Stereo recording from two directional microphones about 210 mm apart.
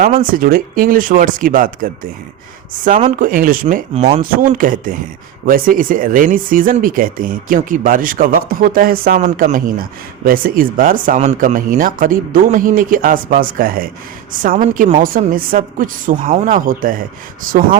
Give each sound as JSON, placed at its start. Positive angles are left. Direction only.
{"t": 0.3, "sound": "speech", "side_deg": -40}
{"t": 3.2, "sound": "speech", "side_deg": -40}
{"t": 4.2, "sound": "speech", "side_deg": -40}